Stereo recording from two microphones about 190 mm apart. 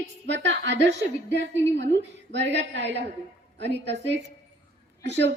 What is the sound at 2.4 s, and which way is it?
A woman's voice, 65° right (ahead or behind).